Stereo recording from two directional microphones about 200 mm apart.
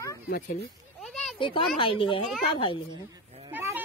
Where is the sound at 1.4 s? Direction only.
25° left (ahead or behind).